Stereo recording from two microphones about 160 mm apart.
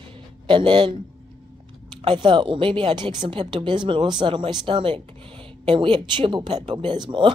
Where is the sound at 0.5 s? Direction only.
30° right (ahead or behind).